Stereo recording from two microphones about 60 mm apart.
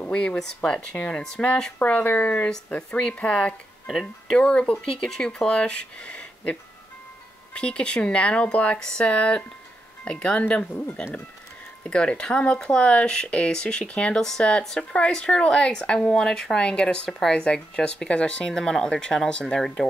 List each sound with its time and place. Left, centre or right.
0.0 s speech: centre
8.7 s speech: centre
11.8 s speech: centre
14.6 s speech: centre